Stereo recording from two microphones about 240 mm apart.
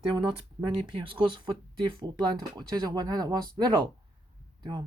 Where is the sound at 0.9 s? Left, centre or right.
Right.